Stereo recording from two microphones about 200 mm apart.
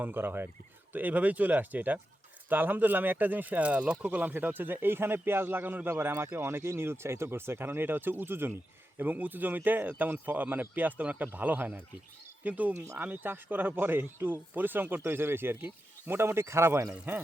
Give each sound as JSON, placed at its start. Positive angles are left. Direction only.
{"t": 0.0, "sound": "speech", "side_deg": -10}